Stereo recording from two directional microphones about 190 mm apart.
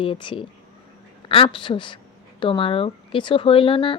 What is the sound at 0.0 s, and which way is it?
Speech, 25° left (ahead or behind).